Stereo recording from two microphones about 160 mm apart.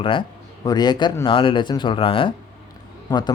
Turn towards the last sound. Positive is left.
turn(degrees=25)  # may be behind; listen again after turning